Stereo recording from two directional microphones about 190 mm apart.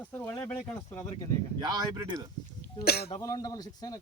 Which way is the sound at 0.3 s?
15° left (ahead or behind).